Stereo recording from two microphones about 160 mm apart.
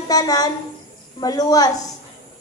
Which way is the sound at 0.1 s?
25° left (ahead or behind).